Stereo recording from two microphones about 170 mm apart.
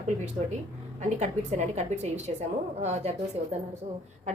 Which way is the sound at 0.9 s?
45° right (ahead or behind).